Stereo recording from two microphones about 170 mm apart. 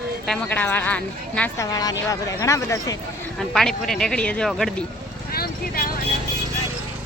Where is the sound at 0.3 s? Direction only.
10° left (ahead or behind).